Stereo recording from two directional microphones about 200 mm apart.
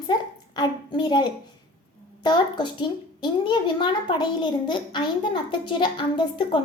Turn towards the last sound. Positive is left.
turn(degrees=25)  # may be behind; listen again after turning